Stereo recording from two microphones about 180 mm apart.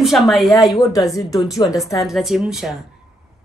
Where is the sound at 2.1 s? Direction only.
Centre (ahead or behind).